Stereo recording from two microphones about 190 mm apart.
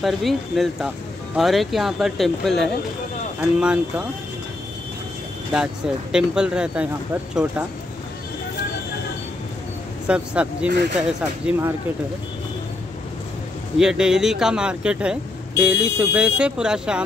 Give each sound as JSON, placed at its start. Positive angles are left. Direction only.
{"t": 0.0, "sound": "speech", "side_deg": 0}
{"t": 6.1, "sound": "speech", "side_deg": -5}
{"t": 10.0, "sound": "speech", "side_deg": -5}
{"t": 13.7, "sound": "speech", "side_deg": -5}